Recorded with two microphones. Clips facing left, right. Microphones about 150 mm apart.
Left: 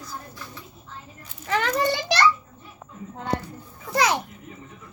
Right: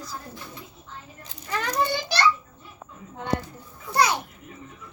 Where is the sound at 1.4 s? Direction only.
90° left.